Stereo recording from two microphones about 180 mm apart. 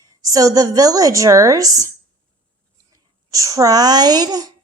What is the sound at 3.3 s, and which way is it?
A woman's voice, 20° right (ahead or behind).